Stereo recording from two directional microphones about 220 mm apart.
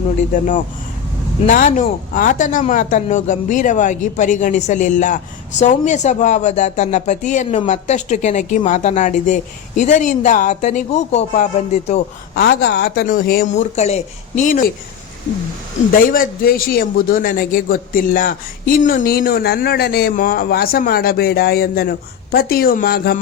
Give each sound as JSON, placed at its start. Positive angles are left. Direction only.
{"t": 1.5, "sound": "speech", "side_deg": 35}
{"t": 12.4, "sound": "a man's voice", "side_deg": 45}
{"t": 13.6, "sound": "speech", "side_deg": 30}
{"t": 15.9, "sound": "a man's voice", "side_deg": 40}